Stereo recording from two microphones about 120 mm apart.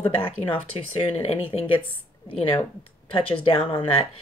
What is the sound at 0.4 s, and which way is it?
Speech, 50° left (ahead or behind).